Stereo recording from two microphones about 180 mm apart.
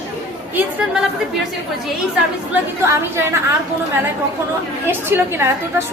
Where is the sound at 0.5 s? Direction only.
5° right (ahead or behind).